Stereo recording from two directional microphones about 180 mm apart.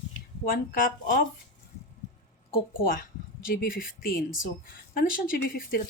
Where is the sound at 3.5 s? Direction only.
50° left (ahead or behind).